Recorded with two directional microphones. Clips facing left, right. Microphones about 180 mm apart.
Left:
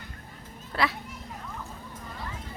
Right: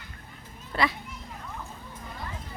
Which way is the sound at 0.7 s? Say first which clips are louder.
Right 1 dB; centre (ahead or behind).